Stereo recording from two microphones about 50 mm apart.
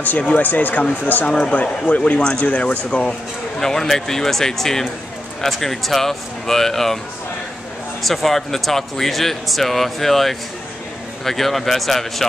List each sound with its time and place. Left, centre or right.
0.0 s speech: left
3.1 s speech: centre
8.0 s speech: centre